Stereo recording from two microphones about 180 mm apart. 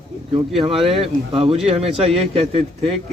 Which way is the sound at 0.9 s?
30° right (ahead or behind).